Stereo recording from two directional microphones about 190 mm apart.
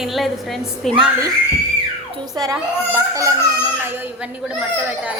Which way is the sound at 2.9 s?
15° right (ahead or behind).